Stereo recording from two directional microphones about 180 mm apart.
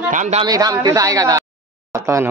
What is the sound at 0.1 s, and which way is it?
Speech, 40° right (ahead or behind).